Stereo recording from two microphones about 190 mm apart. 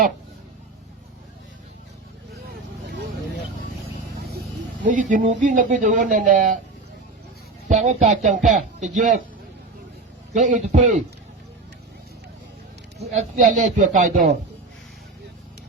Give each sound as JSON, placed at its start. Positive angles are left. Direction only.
{"t": 2.5, "sound": "vehicle", "side_deg": -60}
{"t": 4.8, "sound": "speech", "side_deg": -40}
{"t": 7.7, "sound": "speech", "side_deg": -40}
{"t": 10.3, "sound": "speech", "side_deg": -40}
{"t": 13.0, "sound": "speech", "side_deg": -35}